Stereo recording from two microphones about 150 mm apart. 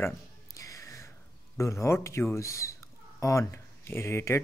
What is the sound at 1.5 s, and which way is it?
Speech, 20° left (ahead or behind).